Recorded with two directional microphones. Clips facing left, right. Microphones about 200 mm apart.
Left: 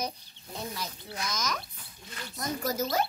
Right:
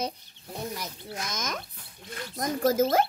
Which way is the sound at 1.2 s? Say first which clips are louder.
Left 1 dB; 25° right (ahead or behind).